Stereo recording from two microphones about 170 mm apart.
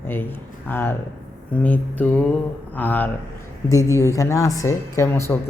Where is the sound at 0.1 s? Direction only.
10° left (ahead or behind).